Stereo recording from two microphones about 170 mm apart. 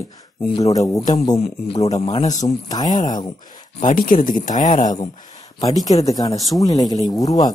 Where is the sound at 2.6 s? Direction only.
20° left (ahead or behind).